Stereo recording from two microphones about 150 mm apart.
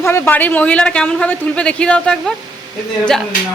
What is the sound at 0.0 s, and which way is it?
Speech, 15° left (ahead or behind).